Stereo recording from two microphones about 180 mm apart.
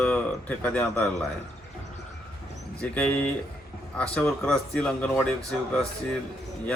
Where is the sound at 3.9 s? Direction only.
5° left (ahead or behind).